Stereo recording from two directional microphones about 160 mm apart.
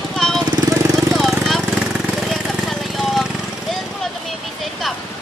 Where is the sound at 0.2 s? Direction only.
5° left (ahead or behind).